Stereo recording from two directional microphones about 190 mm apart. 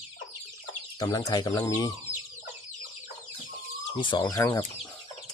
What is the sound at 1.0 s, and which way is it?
Speech, 20° left (ahead or behind).